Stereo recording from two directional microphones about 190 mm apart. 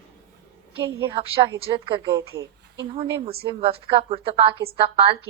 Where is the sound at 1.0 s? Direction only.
25° right (ahead or behind).